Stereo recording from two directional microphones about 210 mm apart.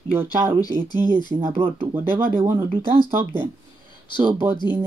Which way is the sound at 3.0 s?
40° right (ahead or behind).